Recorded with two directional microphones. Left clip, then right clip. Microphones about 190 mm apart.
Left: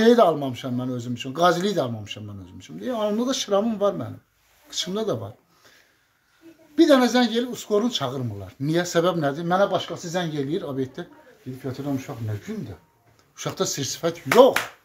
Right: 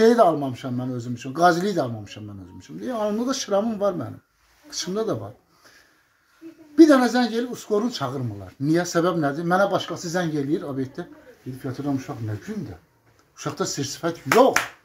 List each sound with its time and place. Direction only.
0.0 s speech: 15° left (ahead or behind)
6.7 s speech: 15° left (ahead or behind)
13.4 s speech: 30° left (ahead or behind)